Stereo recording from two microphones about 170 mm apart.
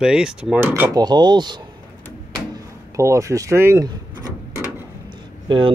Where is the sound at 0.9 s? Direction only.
25° right (ahead or behind).